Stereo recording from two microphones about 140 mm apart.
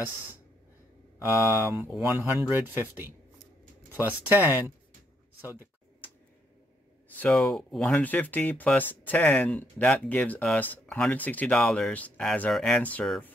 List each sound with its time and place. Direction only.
1.4 s speech: 15° right (ahead or behind)
7.2 s speech: 5° left (ahead or behind)